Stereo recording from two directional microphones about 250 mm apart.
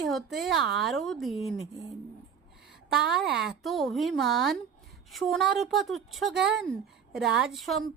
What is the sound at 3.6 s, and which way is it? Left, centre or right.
Speech, centre.